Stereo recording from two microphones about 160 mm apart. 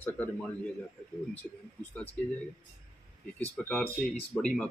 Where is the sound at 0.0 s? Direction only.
10° left (ahead or behind).